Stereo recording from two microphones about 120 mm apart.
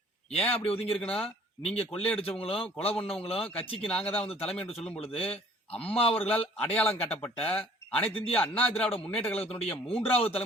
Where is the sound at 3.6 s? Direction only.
50° left (ahead or behind).